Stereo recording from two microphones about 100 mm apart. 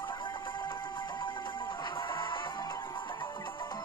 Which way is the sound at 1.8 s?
55° left (ahead or behind).